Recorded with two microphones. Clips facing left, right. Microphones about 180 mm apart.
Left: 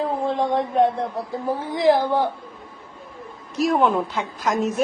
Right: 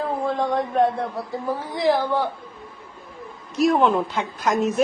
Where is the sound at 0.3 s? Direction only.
25° left (ahead or behind).